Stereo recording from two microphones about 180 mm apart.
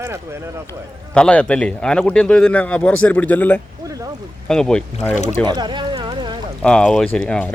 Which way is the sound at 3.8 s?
20° right (ahead or behind).